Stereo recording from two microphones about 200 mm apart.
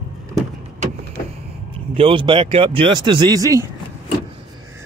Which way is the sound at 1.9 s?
25° right (ahead or behind).